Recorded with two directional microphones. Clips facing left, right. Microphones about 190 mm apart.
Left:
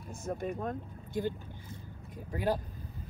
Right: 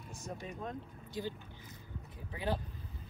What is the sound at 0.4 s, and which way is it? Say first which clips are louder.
Speech: left 6 dB; 50° left (ahead or behind).